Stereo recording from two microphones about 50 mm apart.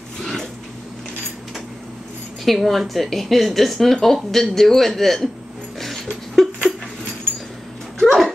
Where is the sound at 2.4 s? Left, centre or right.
Centre.